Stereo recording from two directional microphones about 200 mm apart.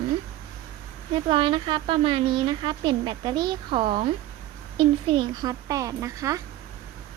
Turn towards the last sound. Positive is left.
turn(degrees=-15)  # may be behind; listen again after turning